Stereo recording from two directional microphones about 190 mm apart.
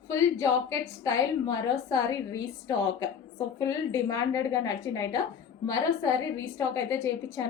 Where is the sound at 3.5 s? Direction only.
15° left (ahead or behind).